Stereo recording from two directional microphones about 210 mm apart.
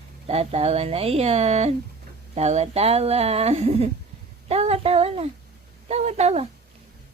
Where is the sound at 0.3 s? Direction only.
30° right (ahead or behind).